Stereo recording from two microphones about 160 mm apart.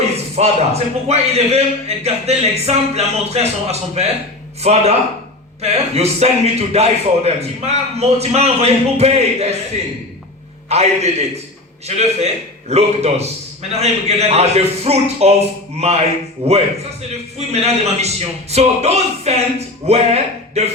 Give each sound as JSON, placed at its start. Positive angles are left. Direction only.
{"t": 0.0, "sound": "a man's voice", "side_deg": -40}
{"t": 10.7, "sound": "a man's voice", "side_deg": -40}